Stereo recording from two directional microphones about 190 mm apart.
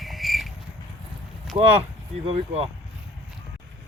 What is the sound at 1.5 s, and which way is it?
A man's voice, 30° right (ahead or behind).